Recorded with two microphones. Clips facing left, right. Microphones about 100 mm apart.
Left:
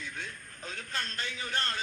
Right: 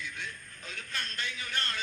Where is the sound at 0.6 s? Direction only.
35° left (ahead or behind).